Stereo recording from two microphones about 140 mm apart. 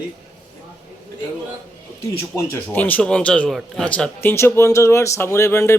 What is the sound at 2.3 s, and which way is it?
A man's voice, 15° left (ahead or behind).